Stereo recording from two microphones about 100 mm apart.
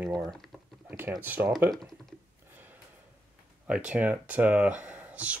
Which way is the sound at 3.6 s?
10° right (ahead or behind).